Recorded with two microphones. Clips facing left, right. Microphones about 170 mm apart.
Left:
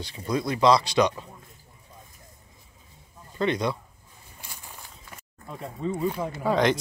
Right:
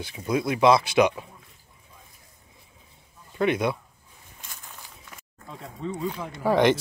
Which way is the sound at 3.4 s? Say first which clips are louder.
Right 2 dB; 5° right (ahead or behind).